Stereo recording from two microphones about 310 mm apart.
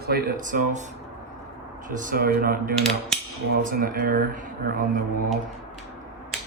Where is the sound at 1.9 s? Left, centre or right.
Right.